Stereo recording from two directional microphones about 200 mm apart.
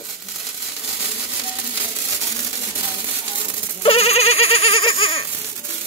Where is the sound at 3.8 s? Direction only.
30° left (ahead or behind).